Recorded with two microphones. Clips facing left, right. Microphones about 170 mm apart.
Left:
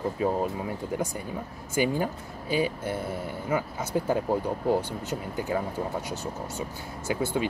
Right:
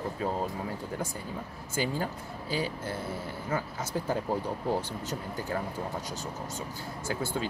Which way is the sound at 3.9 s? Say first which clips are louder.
Left 5 dB; 15° left (ahead or behind).